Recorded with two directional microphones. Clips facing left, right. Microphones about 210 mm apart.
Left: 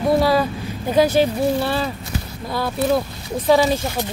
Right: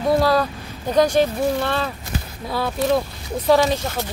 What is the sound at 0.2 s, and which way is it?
Speech, 5° left (ahead or behind).